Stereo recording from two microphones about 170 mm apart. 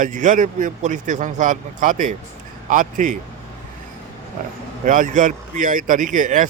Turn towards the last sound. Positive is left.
turn(degrees=-50)  # may be behind; listen again after turning